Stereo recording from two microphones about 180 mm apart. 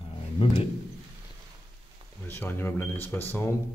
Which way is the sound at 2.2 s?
10° left (ahead or behind).